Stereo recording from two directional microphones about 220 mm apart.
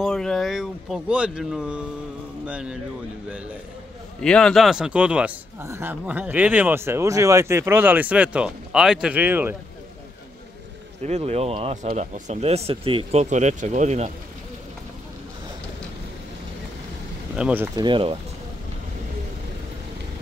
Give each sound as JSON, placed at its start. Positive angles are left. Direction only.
{"t": 0.0, "sound": "a sound", "side_deg": 0}
{"t": 2.4, "sound": "speech", "side_deg": -5}
{"t": 4.2, "sound": "speech", "side_deg": 5}
{"t": 11.1, "sound": "speech", "side_deg": -30}
{"t": 17.4, "sound": "speech", "side_deg": -5}
{"t": 17.7, "sound": "speech", "side_deg": -20}